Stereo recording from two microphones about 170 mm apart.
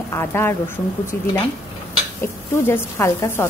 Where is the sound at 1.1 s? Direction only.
65° left (ahead or behind).